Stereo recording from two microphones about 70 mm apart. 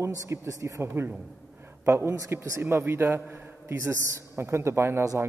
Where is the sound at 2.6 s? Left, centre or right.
Right.